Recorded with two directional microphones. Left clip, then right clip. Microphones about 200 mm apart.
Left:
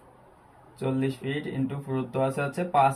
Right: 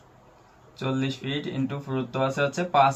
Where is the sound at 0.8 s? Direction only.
5° right (ahead or behind).